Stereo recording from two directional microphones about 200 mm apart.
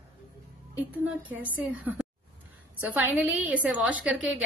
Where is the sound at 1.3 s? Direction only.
10° right (ahead or behind).